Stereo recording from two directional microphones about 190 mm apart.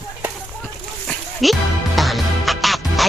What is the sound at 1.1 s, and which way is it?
Music, centre (ahead or behind).